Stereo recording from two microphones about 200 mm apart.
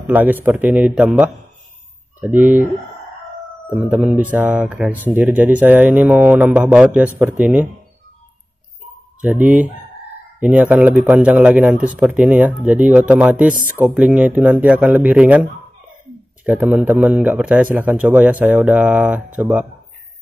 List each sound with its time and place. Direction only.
0.0 s speech: 10° right (ahead or behind)
3.7 s speech: 5° right (ahead or behind)
9.2 s speech: 10° right (ahead or behind)
16.4 s speech: 5° right (ahead or behind)